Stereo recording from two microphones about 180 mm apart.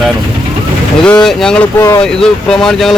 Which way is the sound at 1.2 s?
5° left (ahead or behind).